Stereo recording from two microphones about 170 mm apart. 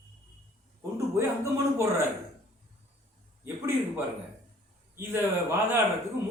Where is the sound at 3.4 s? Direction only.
15° right (ahead or behind).